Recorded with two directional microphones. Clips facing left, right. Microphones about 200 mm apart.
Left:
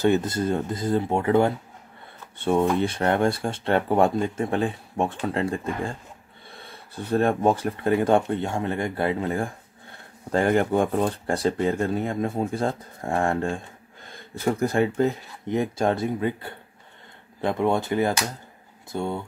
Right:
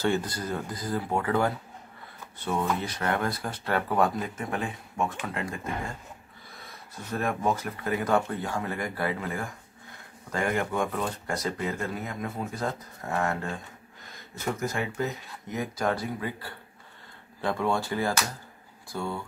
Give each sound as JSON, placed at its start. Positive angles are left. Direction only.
{"t": 0.0, "sound": "speech", "side_deg": 20}
{"t": 2.6, "sound": "speech", "side_deg": 25}